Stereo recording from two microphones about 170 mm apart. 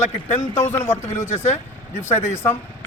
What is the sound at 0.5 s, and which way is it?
Speech, 15° left (ahead or behind).